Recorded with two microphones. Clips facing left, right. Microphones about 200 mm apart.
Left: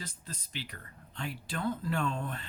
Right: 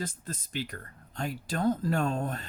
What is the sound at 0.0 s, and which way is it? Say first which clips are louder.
Speech: right 8 dB; 50° right (ahead or behind).